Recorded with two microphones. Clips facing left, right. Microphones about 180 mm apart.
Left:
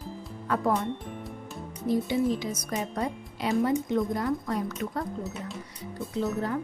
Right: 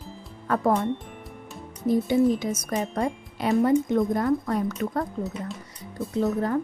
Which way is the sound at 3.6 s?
50° right (ahead or behind).